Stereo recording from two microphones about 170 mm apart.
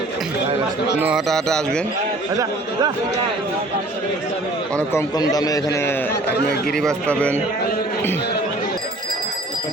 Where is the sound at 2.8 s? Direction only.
25° right (ahead or behind).